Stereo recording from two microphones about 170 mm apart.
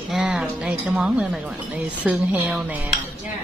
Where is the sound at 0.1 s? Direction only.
5° right (ahead or behind).